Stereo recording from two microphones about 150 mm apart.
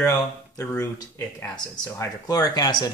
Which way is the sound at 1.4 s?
30° left (ahead or behind).